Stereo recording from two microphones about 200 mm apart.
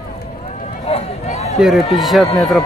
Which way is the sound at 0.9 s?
30° left (ahead or behind).